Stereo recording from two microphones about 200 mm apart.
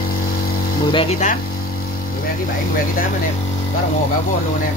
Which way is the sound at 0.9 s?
25° left (ahead or behind).